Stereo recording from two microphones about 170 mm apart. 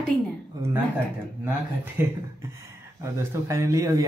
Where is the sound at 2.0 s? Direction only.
15° right (ahead or behind).